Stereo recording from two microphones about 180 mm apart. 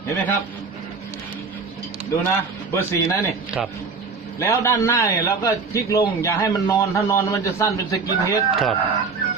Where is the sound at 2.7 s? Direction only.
15° left (ahead or behind).